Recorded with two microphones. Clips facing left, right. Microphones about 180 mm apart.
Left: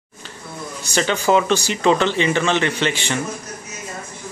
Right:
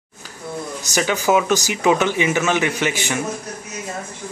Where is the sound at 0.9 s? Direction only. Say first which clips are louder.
Left 1 dB; 10° right (ahead or behind).